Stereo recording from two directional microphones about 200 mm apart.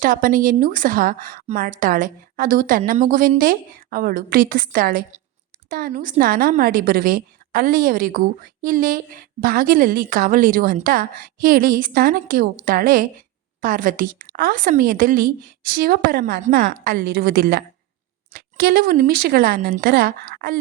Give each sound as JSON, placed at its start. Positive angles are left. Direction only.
{"t": 0.0, "sound": "a woman's voice", "side_deg": -45}